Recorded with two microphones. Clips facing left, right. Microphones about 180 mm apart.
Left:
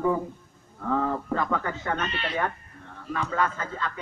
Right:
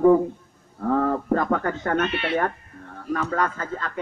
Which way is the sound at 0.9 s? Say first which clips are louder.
Right 5 dB; 50° right (ahead or behind).